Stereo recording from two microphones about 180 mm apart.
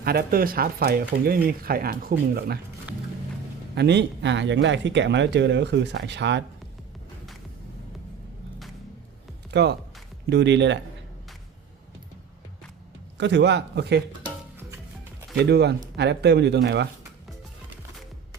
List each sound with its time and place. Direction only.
0.0 s speech: 60° right (ahead or behind)
3.8 s speech: 70° right (ahead or behind)
9.5 s speech: 70° right (ahead or behind)
13.1 s speech: 75° right (ahead or behind)
15.4 s speech: 65° right (ahead or behind)